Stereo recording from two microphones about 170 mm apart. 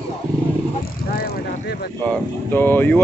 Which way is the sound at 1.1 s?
65° left (ahead or behind).